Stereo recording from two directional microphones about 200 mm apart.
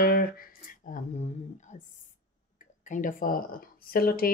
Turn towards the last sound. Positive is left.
turn(degrees=50)  # may be behind; listen again after turning